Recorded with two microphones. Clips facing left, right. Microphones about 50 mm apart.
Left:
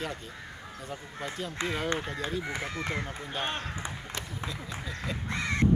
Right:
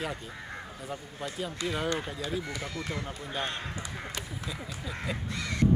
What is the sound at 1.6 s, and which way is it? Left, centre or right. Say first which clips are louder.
Speech: left 1 dB; left.